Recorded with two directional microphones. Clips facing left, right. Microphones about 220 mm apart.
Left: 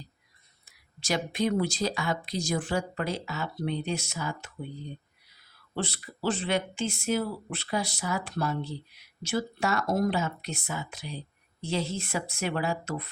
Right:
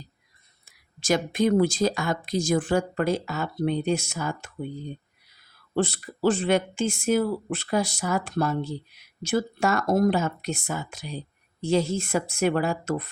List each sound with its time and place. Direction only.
0.9 s speech: 50° right (ahead or behind)
5.7 s speech: 50° right (ahead or behind)